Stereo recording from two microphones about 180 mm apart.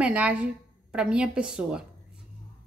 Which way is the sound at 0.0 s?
10° right (ahead or behind).